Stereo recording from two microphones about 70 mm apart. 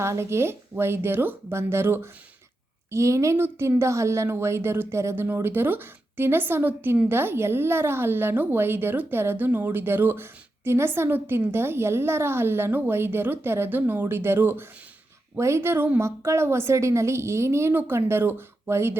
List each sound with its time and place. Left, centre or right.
0.0 s a woman's voice: right
2.9 s a woman's voice: right
3.3 s a woman's voice: right
7.1 s a woman's voice: right